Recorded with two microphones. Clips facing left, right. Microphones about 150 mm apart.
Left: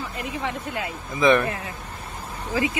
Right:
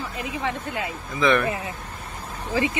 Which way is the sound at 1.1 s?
20° left (ahead or behind).